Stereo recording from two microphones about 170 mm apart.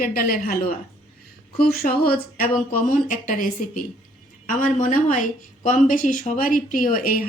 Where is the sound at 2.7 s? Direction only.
50° left (ahead or behind).